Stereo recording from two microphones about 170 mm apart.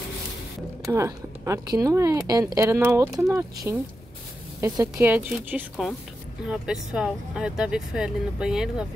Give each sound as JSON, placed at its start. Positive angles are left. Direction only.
{"t": 0.9, "sound": "speech", "side_deg": -15}